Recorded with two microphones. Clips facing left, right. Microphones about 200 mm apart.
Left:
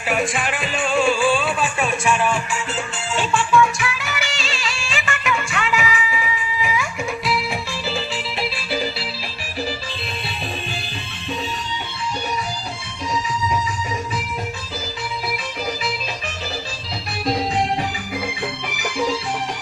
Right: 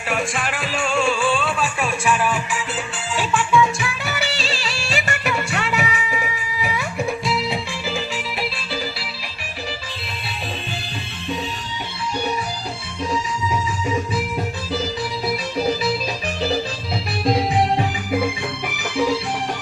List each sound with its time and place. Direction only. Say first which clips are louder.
0.1 s music: left 2 dB; centre (ahead or behind)
3.8 s music: right 1 dB; 35° right (ahead or behind)
7.3 s music: right 1 dB; 20° right (ahead or behind)
8.7 s music: left 3 dB; 20° left (ahead or behind)